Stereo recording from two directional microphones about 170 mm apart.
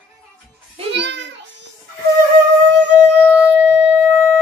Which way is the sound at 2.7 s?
90° right.